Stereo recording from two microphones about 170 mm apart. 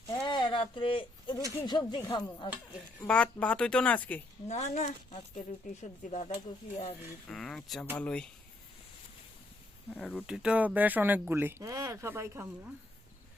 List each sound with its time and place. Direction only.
0.1 s a sound: 25° left (ahead or behind)
1.6 s speech: 25° left (ahead or behind)
3.0 s speech: 5° left (ahead or behind)
4.4 s speech: 40° left (ahead or behind)
7.3 s speech: 5° left (ahead or behind)
9.9 s speech: 10° left (ahead or behind)
10.2 s speech: 5° right (ahead or behind)